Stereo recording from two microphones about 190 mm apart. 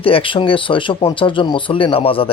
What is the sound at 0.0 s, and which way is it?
Speech, 30° left (ahead or behind).